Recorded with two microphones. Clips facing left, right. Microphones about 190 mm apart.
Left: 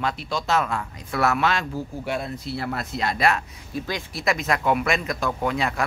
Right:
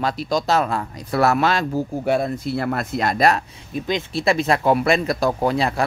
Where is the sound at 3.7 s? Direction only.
20° right (ahead or behind).